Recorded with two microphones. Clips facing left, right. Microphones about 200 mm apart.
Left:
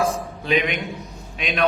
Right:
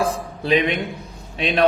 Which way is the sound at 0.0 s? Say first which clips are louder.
Right 1 dB; 35° right (ahead or behind).